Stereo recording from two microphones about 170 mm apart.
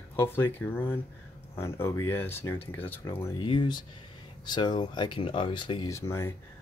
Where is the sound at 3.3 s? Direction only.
30° left (ahead or behind).